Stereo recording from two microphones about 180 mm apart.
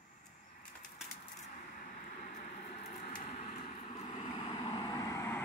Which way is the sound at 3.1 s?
30° left (ahead or behind).